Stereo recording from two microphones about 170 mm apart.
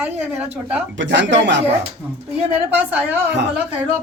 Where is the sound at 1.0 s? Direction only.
90° right.